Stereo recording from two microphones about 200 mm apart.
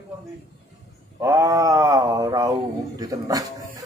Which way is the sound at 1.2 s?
15° right (ahead or behind).